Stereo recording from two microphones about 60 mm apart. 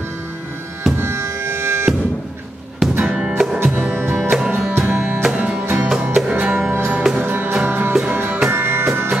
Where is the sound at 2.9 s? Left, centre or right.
Right.